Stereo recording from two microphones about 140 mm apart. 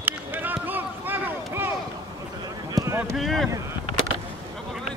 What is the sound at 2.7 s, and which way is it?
Boat, 20° right (ahead or behind).